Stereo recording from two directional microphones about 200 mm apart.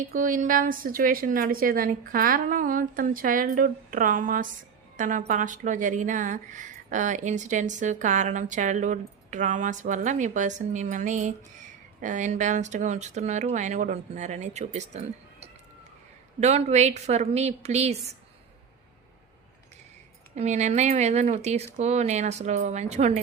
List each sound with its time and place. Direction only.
0.0 s a woman's voice: 40° right (ahead or behind)
20.3 s speech: 35° right (ahead or behind)